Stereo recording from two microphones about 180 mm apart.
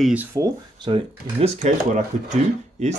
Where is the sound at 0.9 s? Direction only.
30° right (ahead or behind).